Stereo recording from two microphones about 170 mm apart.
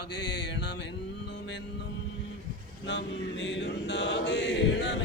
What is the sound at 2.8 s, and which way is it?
Chant, 90° left.